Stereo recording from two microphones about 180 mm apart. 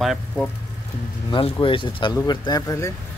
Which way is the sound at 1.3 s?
30° left (ahead or behind).